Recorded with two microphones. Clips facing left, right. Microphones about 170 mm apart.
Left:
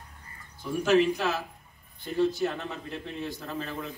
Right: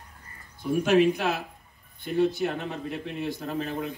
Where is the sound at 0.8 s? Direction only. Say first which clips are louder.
Right 1 dB; 60° right (ahead or behind).